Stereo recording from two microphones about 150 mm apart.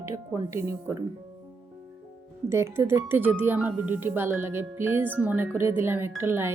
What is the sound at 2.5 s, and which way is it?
Speech, 15° right (ahead or behind).